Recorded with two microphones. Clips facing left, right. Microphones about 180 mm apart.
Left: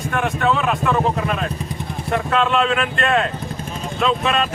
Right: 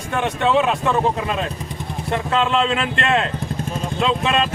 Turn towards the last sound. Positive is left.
turn(degrees=-30)  # may be behind; listen again after turning